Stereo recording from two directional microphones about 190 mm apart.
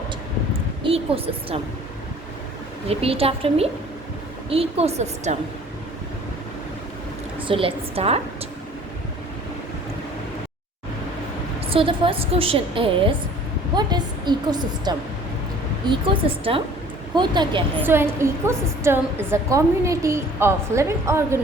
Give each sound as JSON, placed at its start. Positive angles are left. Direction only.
{"t": 0.9, "sound": "a woman's voice", "side_deg": -30}
{"t": 2.9, "sound": "a woman's voice", "side_deg": -30}
{"t": 7.3, "sound": "a woman's voice", "side_deg": -30}
{"t": 11.6, "sound": "a woman's voice", "side_deg": -30}
{"t": 17.8, "sound": "a woman's voice", "side_deg": -10}